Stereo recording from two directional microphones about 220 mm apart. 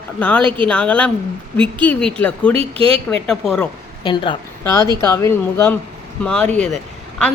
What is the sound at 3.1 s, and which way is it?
Speech, 5° left (ahead or behind).